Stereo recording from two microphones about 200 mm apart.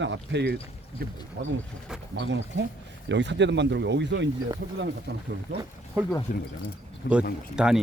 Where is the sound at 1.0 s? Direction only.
50° right (ahead or behind).